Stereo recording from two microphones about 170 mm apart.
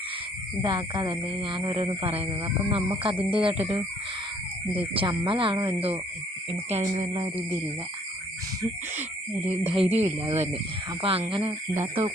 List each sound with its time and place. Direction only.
0.6 s speech: 25° right (ahead or behind)
9.5 s speech: 35° right (ahead or behind)